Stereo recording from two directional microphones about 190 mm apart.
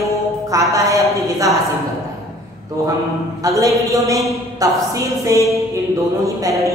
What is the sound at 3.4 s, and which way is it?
A man's voice, 15° right (ahead or behind).